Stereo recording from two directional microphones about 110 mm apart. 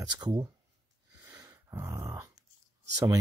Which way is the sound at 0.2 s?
35° right (ahead or behind).